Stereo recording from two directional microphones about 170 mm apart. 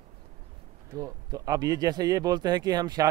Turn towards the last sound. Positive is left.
turn(degrees=-20)  # may be behind; listen again after turning